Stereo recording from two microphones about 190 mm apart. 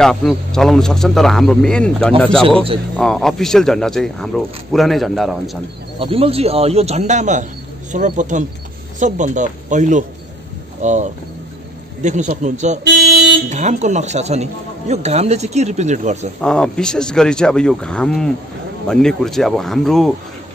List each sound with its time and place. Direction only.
0.0 s speech: centre (ahead or behind)
5.9 s speech: 30° right (ahead or behind)
16.3 s speech: 5° left (ahead or behind)